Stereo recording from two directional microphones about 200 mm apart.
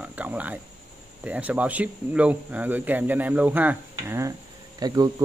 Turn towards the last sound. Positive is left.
turn(degrees=-20)  # may be behind; listen again after turning